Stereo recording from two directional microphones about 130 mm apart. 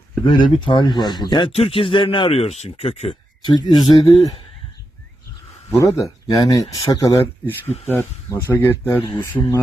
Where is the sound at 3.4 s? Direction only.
30° left (ahead or behind).